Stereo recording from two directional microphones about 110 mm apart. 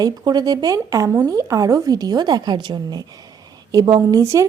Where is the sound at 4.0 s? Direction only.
30° right (ahead or behind).